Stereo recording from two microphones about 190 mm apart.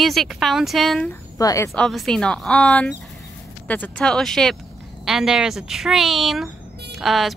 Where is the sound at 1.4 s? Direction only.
20° left (ahead or behind).